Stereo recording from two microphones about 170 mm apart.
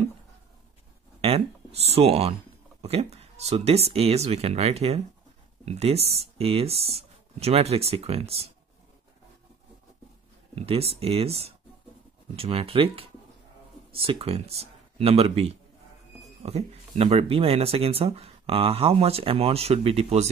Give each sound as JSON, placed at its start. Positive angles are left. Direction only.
{"t": 1.2, "sound": "speech", "side_deg": -35}
{"t": 10.5, "sound": "speech", "side_deg": -35}